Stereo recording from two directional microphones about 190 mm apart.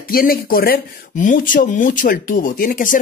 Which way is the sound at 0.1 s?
50° left (ahead or behind).